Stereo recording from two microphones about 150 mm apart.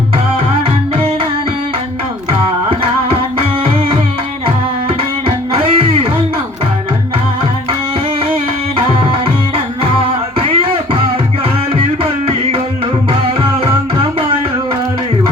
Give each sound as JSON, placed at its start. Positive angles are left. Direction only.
{"t": 5.5, "sound": "music", "side_deg": -35}
{"t": 10.4, "sound": "beatboxing", "side_deg": -35}